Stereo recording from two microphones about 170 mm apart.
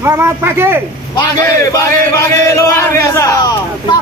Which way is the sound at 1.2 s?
20° left (ahead or behind).